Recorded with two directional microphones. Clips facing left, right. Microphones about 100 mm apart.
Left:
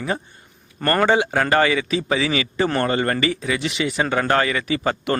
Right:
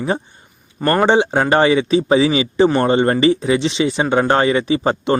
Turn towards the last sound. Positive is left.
turn(degrees=-25)  # may be behind; listen again after turning